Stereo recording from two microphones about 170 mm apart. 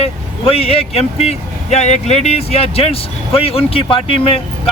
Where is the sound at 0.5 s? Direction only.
35° left (ahead or behind).